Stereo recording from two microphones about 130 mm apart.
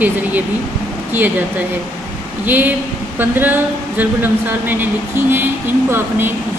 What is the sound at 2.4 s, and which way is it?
Speech, 15° right (ahead or behind).